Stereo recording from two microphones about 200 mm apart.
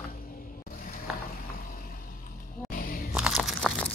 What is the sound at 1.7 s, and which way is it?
Vehicle, 45° left (ahead or behind).